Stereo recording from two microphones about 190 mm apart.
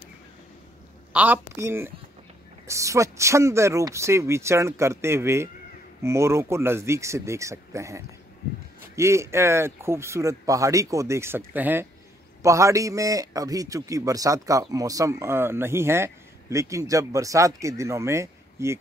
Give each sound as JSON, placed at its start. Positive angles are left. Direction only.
{"t": 1.1, "sound": "a man's voice", "side_deg": -10}